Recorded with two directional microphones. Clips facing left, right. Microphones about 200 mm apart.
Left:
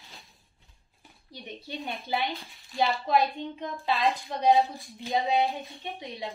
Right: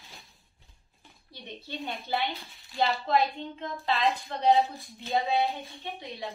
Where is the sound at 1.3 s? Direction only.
15° left (ahead or behind).